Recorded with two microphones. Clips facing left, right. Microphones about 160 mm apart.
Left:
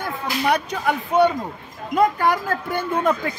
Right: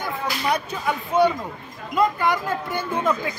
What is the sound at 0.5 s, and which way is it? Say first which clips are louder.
Speech: left 3 dB; 60° left (ahead or behind).